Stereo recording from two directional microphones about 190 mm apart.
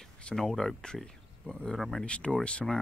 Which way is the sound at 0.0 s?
5° left (ahead or behind).